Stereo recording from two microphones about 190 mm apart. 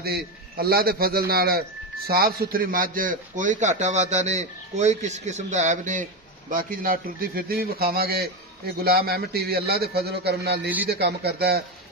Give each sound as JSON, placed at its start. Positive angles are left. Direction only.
{"t": 0.0, "sound": "a man's voice", "side_deg": -55}